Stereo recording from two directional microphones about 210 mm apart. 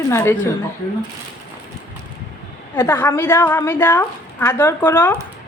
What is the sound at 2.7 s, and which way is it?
Speech, 10° left (ahead or behind).